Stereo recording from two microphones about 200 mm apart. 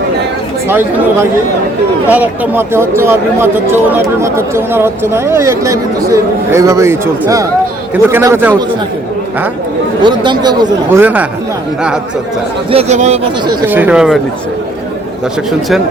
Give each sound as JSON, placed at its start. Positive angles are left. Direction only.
{"t": 0.7, "sound": "speech", "side_deg": -10}
{"t": 10.0, "sound": "speech", "side_deg": -25}
{"t": 11.0, "sound": "speech", "side_deg": -10}
{"t": 12.7, "sound": "speech", "side_deg": -35}
{"t": 13.7, "sound": "speech", "side_deg": -10}